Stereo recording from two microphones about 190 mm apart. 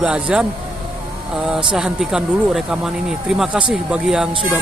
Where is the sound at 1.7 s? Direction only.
5° right (ahead or behind).